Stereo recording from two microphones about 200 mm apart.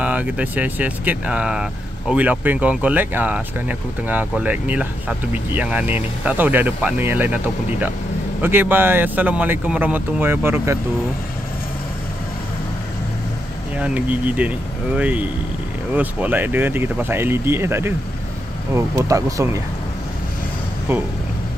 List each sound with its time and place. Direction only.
0.0 s speech: 5° right (ahead or behind)
8.4 s speech: 10° right (ahead or behind)
13.7 s speech: 5° right (ahead or behind)
20.9 s speech: 10° right (ahead or behind)